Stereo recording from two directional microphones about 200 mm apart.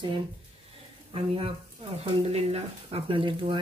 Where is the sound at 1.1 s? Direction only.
30° right (ahead or behind).